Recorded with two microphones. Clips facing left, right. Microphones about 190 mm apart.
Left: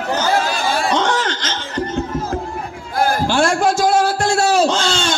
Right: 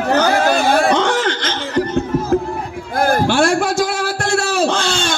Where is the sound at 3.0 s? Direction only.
55° right (ahead or behind).